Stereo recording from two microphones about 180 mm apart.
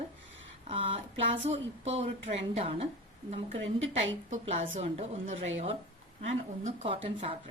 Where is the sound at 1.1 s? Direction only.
90° right.